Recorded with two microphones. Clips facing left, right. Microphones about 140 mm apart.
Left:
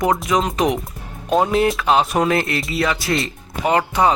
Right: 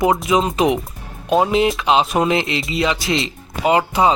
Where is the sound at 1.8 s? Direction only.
20° right (ahead or behind).